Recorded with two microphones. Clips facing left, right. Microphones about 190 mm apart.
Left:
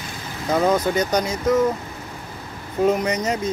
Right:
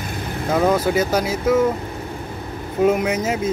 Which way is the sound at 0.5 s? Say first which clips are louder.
Right 1 dB; 5° right (ahead or behind).